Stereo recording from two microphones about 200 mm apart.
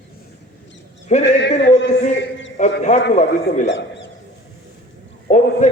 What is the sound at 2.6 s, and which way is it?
A man's voice, 35° left (ahead or behind).